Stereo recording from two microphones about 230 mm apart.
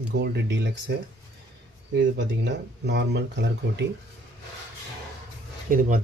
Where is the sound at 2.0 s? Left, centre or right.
Right.